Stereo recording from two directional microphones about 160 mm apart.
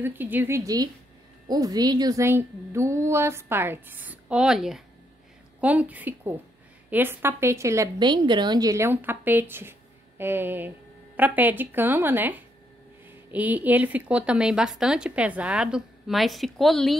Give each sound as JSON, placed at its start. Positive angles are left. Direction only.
{"t": 0.0, "sound": "a woman's voice", "side_deg": -10}